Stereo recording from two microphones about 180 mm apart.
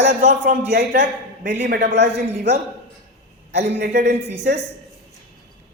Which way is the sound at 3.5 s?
70° right (ahead or behind).